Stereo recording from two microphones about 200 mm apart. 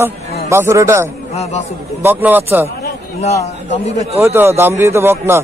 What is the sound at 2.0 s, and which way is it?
Speech, 10° right (ahead or behind).